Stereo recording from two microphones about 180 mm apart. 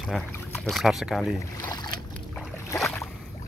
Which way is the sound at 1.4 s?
20° left (ahead or behind).